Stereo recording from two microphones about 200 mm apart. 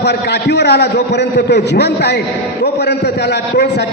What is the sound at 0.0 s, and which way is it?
A man's voice, 55° left (ahead or behind).